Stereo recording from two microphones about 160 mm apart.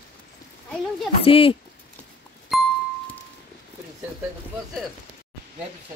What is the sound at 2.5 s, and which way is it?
Music, centre (ahead or behind).